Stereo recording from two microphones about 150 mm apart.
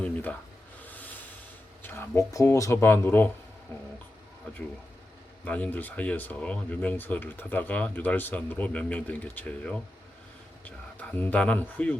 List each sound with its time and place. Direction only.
0.0 s speech: 10° left (ahead or behind)
0.9 s rub: 10° left (ahead or behind)
1.8 s speech: 15° left (ahead or behind)
5.5 s speech: 10° left (ahead or behind)